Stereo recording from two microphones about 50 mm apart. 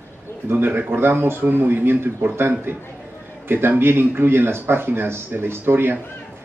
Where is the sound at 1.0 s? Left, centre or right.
Right.